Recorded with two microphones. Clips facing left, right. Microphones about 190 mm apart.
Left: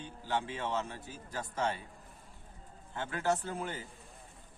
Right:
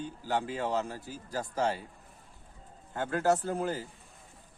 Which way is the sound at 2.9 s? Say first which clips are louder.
Right 5 dB; 45° right (ahead or behind).